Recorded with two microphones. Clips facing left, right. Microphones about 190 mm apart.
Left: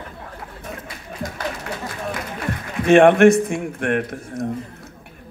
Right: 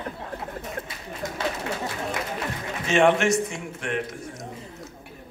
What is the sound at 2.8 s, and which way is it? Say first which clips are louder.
A man's voice: left 9 dB; 55° left (ahead or behind).